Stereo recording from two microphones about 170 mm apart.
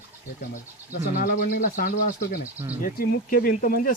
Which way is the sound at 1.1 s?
55° left (ahead or behind).